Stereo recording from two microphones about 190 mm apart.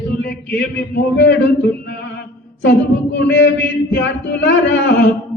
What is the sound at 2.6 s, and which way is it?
Speech, 70° left (ahead or behind).